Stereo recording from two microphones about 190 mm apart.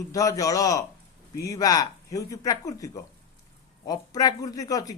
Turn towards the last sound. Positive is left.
turn(degrees=20)  # may be behind; listen again after turning